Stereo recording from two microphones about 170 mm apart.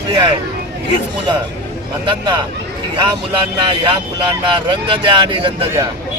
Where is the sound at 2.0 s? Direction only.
30° right (ahead or behind).